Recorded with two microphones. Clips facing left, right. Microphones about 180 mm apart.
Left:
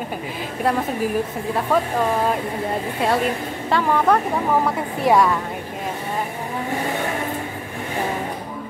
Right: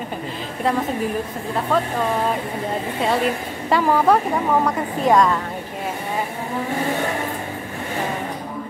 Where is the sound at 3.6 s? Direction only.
5° right (ahead or behind).